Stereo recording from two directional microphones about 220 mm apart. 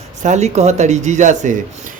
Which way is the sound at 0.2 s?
30° right (ahead or behind).